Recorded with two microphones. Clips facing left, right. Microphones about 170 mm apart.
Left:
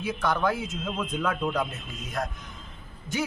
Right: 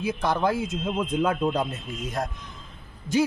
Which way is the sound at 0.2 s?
30° right (ahead or behind).